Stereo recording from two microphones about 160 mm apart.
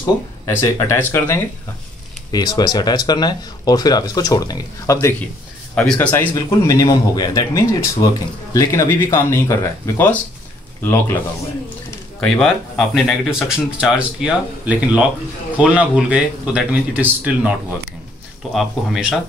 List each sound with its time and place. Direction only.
0.0 s speech: 20° left (ahead or behind)
4.9 s speech: 10° left (ahead or behind)
12.2 s speech: centre (ahead or behind)
18.5 s speech: centre (ahead or behind)